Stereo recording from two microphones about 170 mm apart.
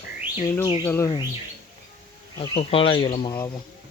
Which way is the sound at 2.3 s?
35° left (ahead or behind).